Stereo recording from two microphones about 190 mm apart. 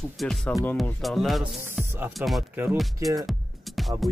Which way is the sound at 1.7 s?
10° right (ahead or behind).